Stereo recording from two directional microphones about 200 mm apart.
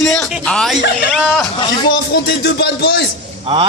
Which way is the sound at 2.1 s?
55° left (ahead or behind).